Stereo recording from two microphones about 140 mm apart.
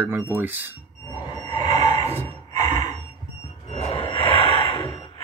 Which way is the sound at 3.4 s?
45° left (ahead or behind).